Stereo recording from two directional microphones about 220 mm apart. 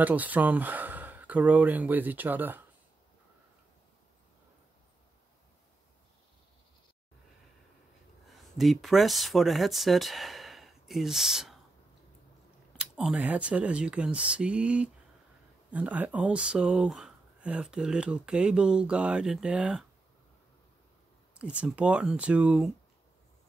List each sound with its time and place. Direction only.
0.0 s speech: 5° right (ahead or behind)
8.3 s speech: centre (ahead or behind)
12.7 s speech: 5° right (ahead or behind)
21.4 s speech: 5° right (ahead or behind)